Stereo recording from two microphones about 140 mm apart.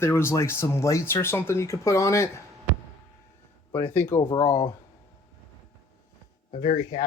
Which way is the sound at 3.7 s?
15° left (ahead or behind).